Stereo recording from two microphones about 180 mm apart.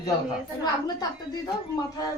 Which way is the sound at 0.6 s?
20° left (ahead or behind).